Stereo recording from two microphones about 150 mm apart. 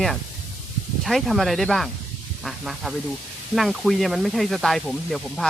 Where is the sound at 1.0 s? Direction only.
Centre (ahead or behind).